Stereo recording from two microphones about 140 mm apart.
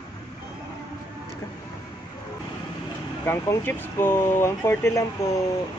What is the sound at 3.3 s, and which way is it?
Speech, 15° left (ahead or behind).